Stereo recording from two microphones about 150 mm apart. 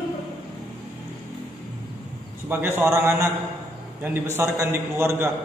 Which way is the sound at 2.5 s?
15° right (ahead or behind).